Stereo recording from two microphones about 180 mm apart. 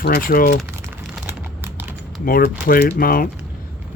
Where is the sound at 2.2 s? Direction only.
55° left (ahead or behind).